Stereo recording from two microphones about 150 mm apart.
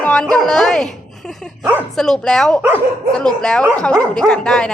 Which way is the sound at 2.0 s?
5° left (ahead or behind).